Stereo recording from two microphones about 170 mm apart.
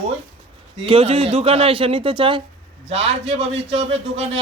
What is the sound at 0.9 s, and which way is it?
Speech, 35° right (ahead or behind).